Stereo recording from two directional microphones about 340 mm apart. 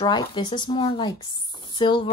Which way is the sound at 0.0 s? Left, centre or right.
Centre.